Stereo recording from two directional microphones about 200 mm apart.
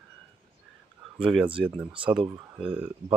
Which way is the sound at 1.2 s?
5° right (ahead or behind).